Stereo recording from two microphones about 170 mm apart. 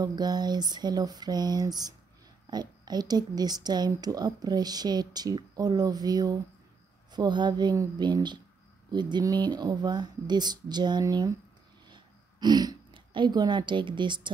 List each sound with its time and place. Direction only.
0.0 s speech: 25° right (ahead or behind)